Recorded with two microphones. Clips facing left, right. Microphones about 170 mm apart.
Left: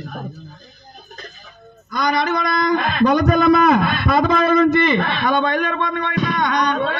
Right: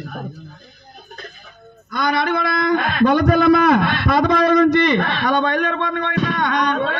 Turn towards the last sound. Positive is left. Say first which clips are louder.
# even
turn(degrees=-60)  # may be behind; listen again after turning